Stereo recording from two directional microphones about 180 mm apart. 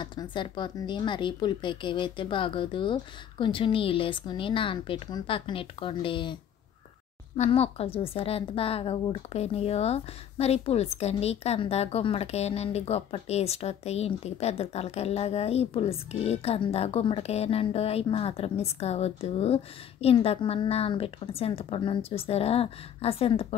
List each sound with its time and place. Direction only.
0.0 s speech: 25° left (ahead or behind)
7.3 s a woman's voice: 35° left (ahead or behind)